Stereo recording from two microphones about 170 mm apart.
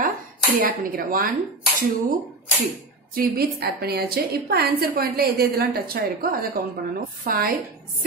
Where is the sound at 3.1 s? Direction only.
65° right (ahead or behind).